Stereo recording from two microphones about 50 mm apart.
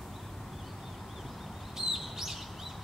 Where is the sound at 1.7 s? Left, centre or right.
Centre.